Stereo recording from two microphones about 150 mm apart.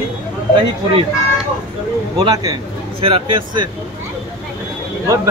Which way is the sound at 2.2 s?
25° right (ahead or behind).